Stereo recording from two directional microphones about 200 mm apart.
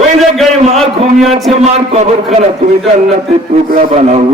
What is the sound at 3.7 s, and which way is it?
Speech, 35° right (ahead or behind).